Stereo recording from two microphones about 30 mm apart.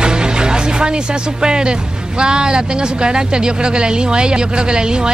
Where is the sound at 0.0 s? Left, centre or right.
Right.